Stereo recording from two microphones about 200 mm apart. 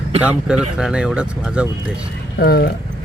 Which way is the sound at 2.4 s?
50° left (ahead or behind).